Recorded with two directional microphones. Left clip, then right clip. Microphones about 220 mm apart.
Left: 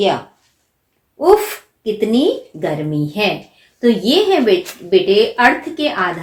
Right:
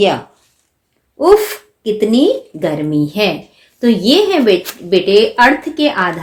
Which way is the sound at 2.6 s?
45° right (ahead or behind).